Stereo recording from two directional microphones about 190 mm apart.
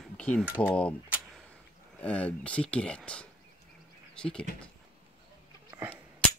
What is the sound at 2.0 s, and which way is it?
Speech, 5° left (ahead or behind).